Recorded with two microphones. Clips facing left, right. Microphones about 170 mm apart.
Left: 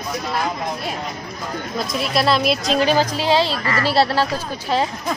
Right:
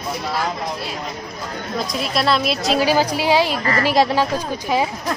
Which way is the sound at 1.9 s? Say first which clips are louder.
Left 1 dB; centre (ahead or behind).